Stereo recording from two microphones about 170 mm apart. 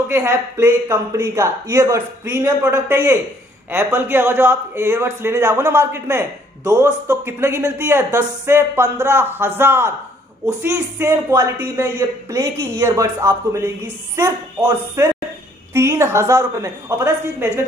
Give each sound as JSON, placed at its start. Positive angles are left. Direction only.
{"t": 0.1, "sound": "a man's voice", "side_deg": -15}